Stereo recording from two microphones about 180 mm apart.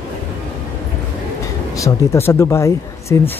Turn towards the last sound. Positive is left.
turn(degrees=15)  # may be behind; listen again after turning